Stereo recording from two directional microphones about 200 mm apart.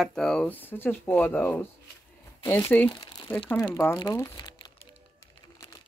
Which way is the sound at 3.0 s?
20° left (ahead or behind).